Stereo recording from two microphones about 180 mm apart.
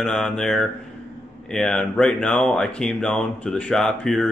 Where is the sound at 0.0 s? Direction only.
5° left (ahead or behind).